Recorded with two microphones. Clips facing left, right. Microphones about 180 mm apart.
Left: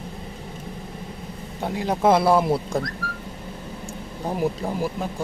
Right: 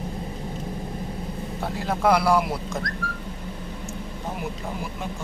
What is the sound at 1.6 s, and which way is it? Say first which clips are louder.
Speech: left 3 dB; 15° left (ahead or behind).